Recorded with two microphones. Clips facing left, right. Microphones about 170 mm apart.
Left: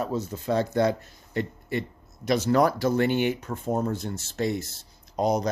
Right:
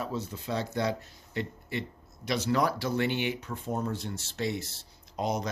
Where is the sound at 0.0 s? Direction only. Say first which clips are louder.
Left 6 dB; 45° left (ahead or behind).